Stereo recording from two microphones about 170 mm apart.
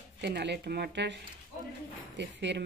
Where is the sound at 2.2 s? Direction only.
90° right.